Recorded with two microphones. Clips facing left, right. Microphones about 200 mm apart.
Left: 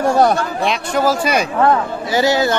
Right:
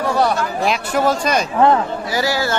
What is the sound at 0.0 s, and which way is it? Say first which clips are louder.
Chatter: left 4 dB; 50° left (ahead or behind).